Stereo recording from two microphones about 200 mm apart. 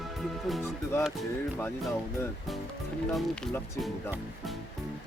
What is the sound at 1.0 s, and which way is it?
Speech, centre (ahead or behind).